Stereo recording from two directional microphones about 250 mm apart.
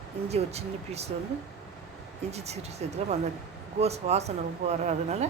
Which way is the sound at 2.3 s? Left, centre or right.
Right.